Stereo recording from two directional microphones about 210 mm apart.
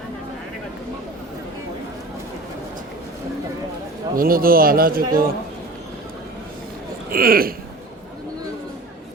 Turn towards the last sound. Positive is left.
turn(degrees=-45)  # may be behind; listen again after turning